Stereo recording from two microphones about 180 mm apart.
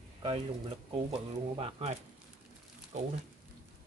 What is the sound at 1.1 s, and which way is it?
Speech, 35° right (ahead or behind).